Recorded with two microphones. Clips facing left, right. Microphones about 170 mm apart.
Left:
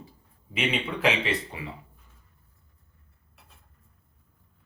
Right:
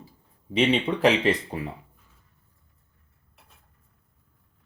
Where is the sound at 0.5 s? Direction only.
40° right (ahead or behind).